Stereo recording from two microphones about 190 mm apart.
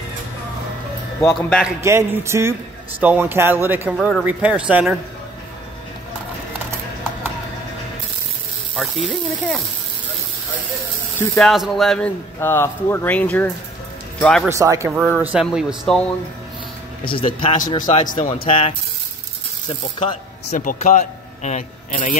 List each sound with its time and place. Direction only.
1.8 s speech: 15° right (ahead or behind)
8.7 s speech: centre (ahead or behind)
11.1 s speech: 5° left (ahead or behind)
12.4 s speech: 10° left (ahead or behind)
14.5 s speech: 15° right (ahead or behind)
14.9 s speech: 5° right (ahead or behind)
17.0 s speech: 25° left (ahead or behind)
17.9 s speech: 40° left (ahead or behind)
18.4 s speech: 30° left (ahead or behind)
20.5 s speech: 45° left (ahead or behind)